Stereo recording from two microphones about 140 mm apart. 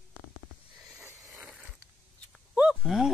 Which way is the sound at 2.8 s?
Centre (ahead or behind).